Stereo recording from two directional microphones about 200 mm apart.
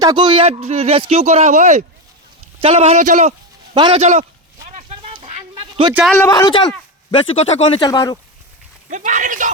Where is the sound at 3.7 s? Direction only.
25° right (ahead or behind).